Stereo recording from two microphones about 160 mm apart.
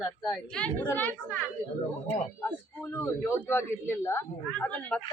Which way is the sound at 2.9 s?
15° left (ahead or behind).